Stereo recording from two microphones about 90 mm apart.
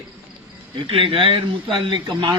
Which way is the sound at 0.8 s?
80° right.